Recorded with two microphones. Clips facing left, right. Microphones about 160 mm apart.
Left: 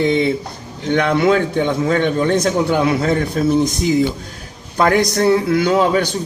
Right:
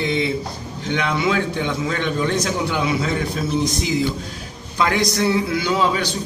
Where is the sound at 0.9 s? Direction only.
50° left (ahead or behind).